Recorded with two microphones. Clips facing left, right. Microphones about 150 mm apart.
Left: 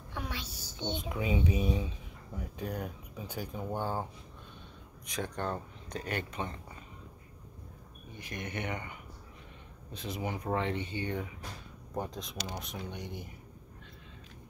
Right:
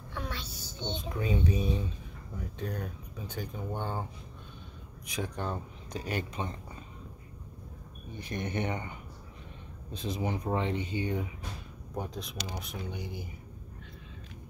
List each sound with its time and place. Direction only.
0.1 s a sound: 10° left (ahead or behind)
2.3 s speech: 5° left (ahead or behind)
5.0 s speech: 5° right (ahead or behind)
8.2 s speech: 30° right (ahead or behind)
10.0 s speech: 25° right (ahead or behind)
11.9 s speech: centre (ahead or behind)